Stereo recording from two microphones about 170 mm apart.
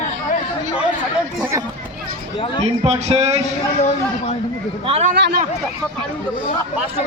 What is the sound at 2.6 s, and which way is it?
Speech, 40° right (ahead or behind).